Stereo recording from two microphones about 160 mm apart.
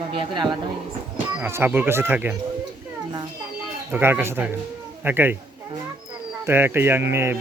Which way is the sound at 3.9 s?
15° right (ahead or behind).